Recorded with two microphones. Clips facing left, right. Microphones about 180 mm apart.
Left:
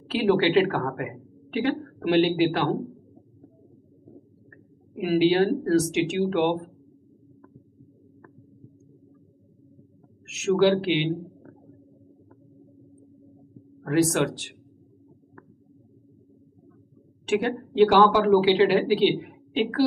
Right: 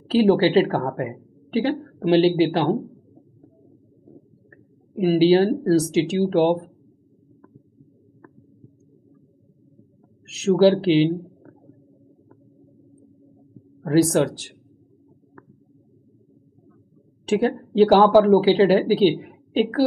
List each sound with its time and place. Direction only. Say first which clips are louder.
0.1 s a woman's voice: right 4 dB; 35° right (ahead or behind)
4.9 s a woman's voice: right 5 dB; 30° right (ahead or behind)
10.2 s a woman's voice: right 4 dB; 35° right (ahead or behind)
13.8 s a woman's voice: right 4 dB; 35° right (ahead or behind)
17.3 s a woman's voice: right 4 dB; 35° right (ahead or behind)